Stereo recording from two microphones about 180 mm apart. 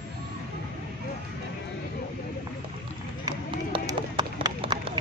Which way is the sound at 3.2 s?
20° right (ahead or behind).